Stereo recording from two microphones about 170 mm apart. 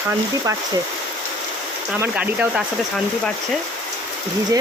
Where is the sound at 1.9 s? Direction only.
5° right (ahead or behind).